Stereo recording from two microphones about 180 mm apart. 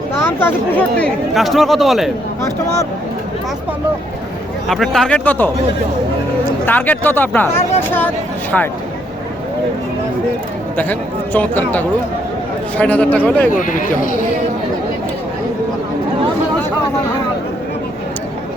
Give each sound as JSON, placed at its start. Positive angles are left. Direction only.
{"t": 0.3, "sound": "speech", "side_deg": 10}
{"t": 4.7, "sound": "speech", "side_deg": 0}
{"t": 6.7, "sound": "speech", "side_deg": 10}
{"t": 8.5, "sound": "speech", "side_deg": 5}
{"t": 10.8, "sound": "speech", "side_deg": 10}
{"t": 13.5, "sound": "speech", "side_deg": 45}